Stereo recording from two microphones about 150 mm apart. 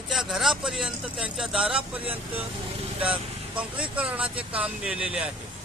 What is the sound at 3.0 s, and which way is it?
Speech, 10° right (ahead or behind).